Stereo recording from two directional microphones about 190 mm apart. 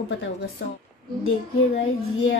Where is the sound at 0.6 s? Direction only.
75° left (ahead or behind).